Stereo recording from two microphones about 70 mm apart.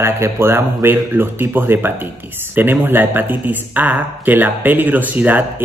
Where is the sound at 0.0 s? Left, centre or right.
Right.